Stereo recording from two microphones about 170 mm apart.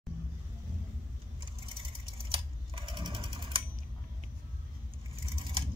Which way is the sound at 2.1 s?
30° right (ahead or behind).